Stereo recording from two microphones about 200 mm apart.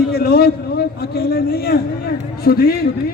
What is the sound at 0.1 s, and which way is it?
A man's voice, 50° left (ahead or behind).